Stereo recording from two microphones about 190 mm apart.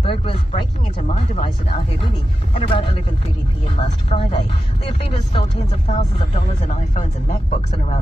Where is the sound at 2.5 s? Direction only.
30° left (ahead or behind).